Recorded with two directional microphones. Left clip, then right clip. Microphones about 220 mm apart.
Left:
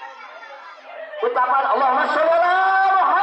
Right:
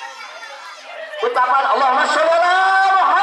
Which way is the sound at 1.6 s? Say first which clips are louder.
Right 3 dB; 10° left (ahead or behind).